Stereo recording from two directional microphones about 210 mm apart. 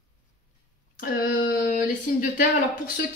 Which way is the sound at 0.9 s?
40° left (ahead or behind).